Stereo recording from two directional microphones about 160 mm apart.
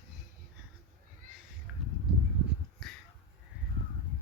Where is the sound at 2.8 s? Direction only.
Centre (ahead or behind).